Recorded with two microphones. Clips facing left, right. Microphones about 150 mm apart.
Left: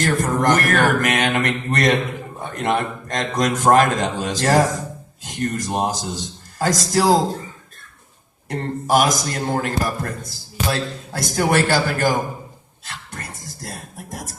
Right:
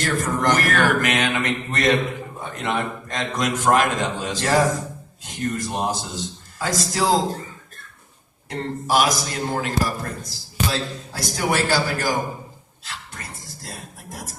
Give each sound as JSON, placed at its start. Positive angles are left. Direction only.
{"t": 0.0, "sound": "a man's voice", "side_deg": 50}
{"t": 8.4, "sound": "a man's voice", "side_deg": 45}
{"t": 12.8, "sound": "dog", "side_deg": 50}